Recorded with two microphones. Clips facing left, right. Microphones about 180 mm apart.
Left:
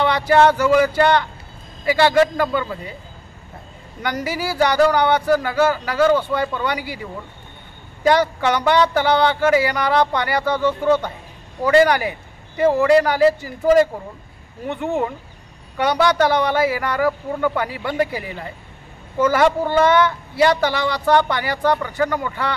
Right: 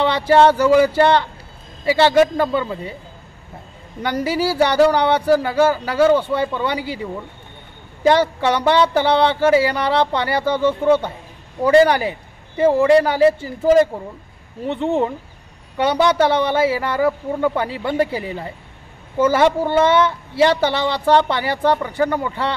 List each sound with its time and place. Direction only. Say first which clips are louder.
0.0 s a man's voice: right 1 dB; 30° right (ahead or behind)
4.0 s a man's voice: right 4 dB; 30° right (ahead or behind)
8.1 s a man's voice: right 1 dB; 30° right (ahead or behind)